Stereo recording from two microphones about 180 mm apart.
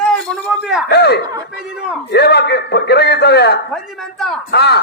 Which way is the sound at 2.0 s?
65° left (ahead or behind).